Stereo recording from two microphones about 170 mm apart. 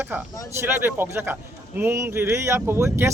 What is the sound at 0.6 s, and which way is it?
A man's voice, 10° right (ahead or behind).